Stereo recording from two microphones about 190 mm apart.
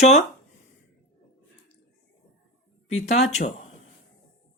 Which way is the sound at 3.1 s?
35° left (ahead or behind).